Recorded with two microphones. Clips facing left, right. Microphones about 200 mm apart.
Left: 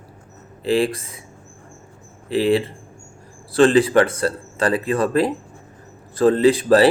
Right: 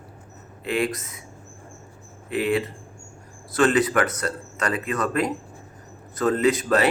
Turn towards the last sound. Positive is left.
turn(degrees=30)  # may be behind; listen again after turning